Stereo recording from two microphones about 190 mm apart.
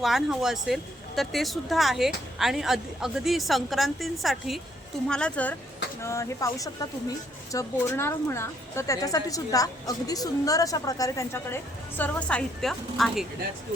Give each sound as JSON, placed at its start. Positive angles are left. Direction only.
{"t": 0.0, "sound": "a woman's voice", "side_deg": 0}